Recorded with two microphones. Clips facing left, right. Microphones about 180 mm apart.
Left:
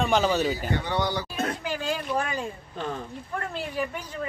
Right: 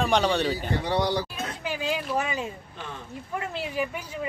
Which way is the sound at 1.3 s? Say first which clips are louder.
Left 5 dB; 55° left (ahead or behind).